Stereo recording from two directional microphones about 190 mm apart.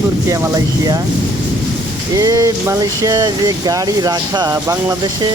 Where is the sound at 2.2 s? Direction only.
20° right (ahead or behind).